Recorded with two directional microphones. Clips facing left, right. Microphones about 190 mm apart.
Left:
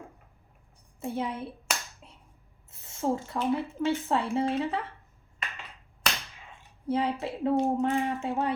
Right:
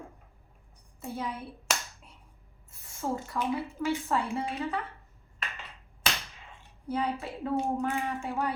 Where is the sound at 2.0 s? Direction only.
25° left (ahead or behind).